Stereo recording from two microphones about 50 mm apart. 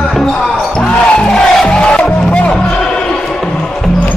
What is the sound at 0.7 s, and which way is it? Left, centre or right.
Music, centre.